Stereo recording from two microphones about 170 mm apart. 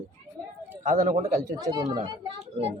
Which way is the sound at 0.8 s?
45° right (ahead or behind).